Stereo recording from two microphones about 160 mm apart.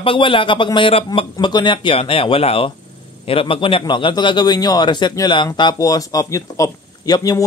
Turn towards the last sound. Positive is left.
turn(degrees=25)  # may be behind; listen again after turning